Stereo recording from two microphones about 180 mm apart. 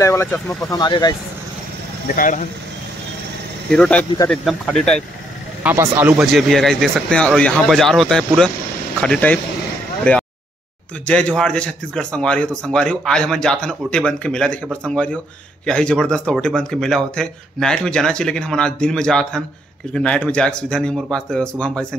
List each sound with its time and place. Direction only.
0.0 s speech: 15° left (ahead or behind)
2.1 s speech: 45° left (ahead or behind)
3.7 s a man's voice: 5° left (ahead or behind)
5.6 s speech: 10° right (ahead or behind)
6.3 s a man's voice: centre (ahead or behind)